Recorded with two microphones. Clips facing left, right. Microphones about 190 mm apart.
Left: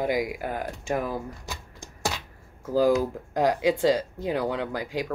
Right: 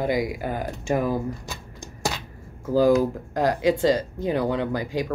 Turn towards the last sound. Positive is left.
turn(degrees=5)  # may be behind; listen again after turning